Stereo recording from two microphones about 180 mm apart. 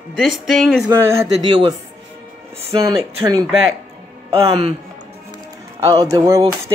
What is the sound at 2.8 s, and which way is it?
Speech, 20° right (ahead or behind).